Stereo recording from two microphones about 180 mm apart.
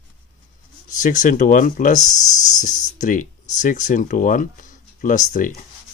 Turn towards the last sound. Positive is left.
turn(degrees=45)  # may be behind; listen again after turning